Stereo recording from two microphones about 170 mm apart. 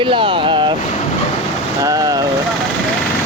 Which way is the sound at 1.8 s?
20° right (ahead or behind).